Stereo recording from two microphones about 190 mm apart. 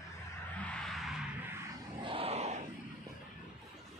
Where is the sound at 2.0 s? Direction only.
30° right (ahead or behind).